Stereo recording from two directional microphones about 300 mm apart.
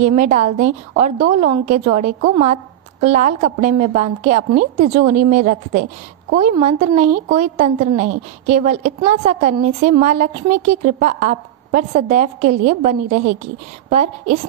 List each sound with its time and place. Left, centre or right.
0.0 s a woman's voice: right